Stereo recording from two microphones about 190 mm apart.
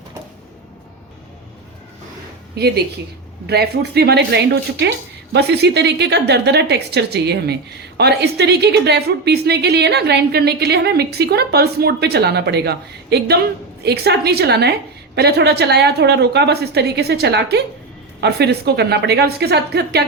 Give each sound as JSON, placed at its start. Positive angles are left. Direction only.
{"t": 2.6, "sound": "a woman's voice", "side_deg": -60}